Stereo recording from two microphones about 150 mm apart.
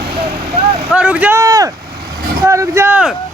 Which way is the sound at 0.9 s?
10° right (ahead or behind).